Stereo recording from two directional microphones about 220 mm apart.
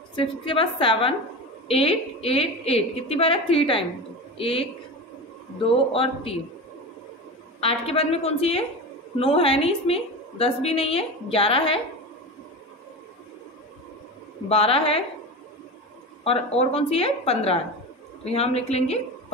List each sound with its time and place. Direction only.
0.1 s a woman's voice: 25° left (ahead or behind)
7.6 s a woman's voice: 25° left (ahead or behind)
14.5 s a woman's voice: 25° left (ahead or behind)
16.3 s a woman's voice: 25° left (ahead or behind)